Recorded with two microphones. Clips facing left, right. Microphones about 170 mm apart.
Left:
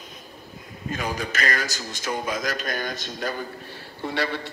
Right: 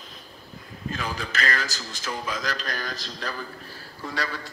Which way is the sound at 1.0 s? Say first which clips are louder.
Left 3 dB; 45° left (ahead or behind).